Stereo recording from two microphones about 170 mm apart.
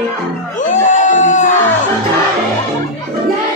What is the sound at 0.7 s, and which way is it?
Music, 50° left (ahead or behind).